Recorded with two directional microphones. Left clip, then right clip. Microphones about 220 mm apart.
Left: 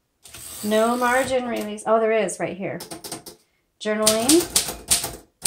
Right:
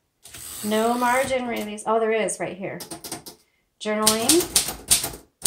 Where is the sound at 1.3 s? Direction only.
35° left (ahead or behind).